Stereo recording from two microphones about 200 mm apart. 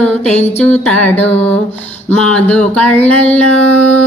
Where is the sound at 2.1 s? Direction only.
5° left (ahead or behind).